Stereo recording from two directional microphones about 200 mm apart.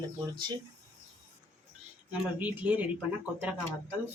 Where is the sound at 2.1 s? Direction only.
10° right (ahead or behind).